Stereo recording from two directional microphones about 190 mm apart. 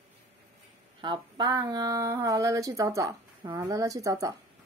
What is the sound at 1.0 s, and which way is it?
Speech, 25° right (ahead or behind).